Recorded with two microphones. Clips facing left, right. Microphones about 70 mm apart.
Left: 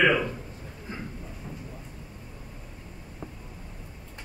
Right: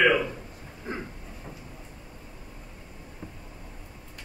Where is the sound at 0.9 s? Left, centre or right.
Right.